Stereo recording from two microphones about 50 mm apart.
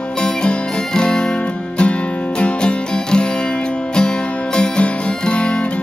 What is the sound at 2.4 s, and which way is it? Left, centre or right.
Music, left.